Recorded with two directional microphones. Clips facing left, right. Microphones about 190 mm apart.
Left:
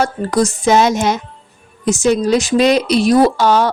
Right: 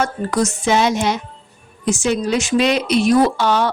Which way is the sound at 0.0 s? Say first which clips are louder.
Left 3 dB; 35° left (ahead or behind).